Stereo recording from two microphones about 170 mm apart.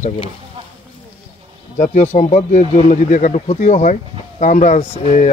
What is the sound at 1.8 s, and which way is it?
Speech, 45° left (ahead or behind).